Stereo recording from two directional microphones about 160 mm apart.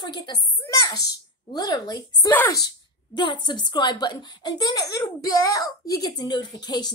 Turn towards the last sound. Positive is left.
turn(degrees=25)  # may be behind; listen again after turning